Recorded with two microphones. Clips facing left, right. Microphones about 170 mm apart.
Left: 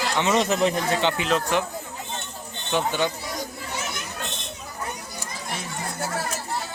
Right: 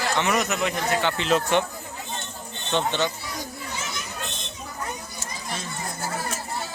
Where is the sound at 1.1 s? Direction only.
Centre (ahead or behind).